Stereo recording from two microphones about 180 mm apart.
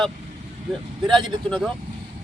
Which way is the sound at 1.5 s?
5° left (ahead or behind).